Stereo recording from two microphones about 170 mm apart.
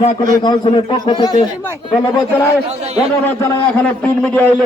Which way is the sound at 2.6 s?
40° right (ahead or behind).